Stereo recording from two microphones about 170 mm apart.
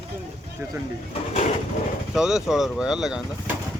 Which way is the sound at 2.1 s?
5° right (ahead or behind).